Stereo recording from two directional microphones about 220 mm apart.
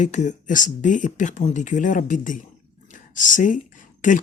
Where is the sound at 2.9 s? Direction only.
35° left (ahead or behind).